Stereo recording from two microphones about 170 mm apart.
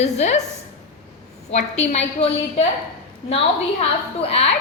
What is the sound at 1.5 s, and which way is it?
A woman's voice, 40° left (ahead or behind).